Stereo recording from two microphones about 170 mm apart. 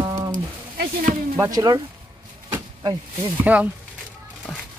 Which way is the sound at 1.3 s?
20° right (ahead or behind).